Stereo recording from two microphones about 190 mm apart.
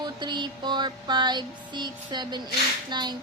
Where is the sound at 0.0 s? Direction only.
25° right (ahead or behind).